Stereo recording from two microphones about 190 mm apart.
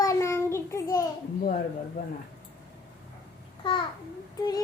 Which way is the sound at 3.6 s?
25° left (ahead or behind).